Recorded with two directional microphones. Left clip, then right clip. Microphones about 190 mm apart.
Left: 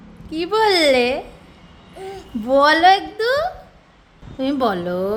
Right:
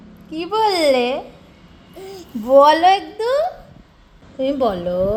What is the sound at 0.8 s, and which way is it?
A woman's voice, 10° left (ahead or behind).